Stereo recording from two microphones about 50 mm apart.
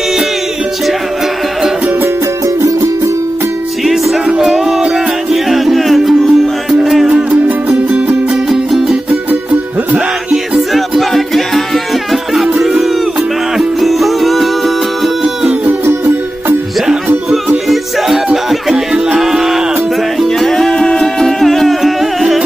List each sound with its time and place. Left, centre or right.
2.4 s music: right
3.8 s music: centre
7.1 s music: centre
7.4 s music: right
8.5 s music: centre
10.7 s music: centre
12.5 s crowd: centre
13.6 s music: centre
16.8 s music: centre
20.2 s music: centre